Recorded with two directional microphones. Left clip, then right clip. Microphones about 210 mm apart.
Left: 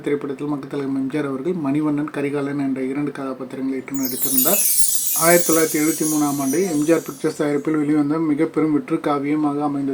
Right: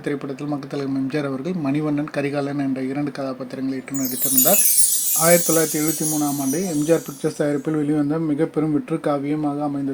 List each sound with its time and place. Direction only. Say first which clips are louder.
1.1 s speech: left 2 dB; 35° right (ahead or behind)
4.0 s speech: right 3 dB; centre (ahead or behind)
7.3 s speech: left 1 dB; 30° right (ahead or behind)